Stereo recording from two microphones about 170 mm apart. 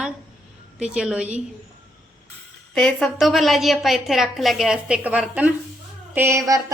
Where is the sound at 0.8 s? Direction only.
5° right (ahead or behind).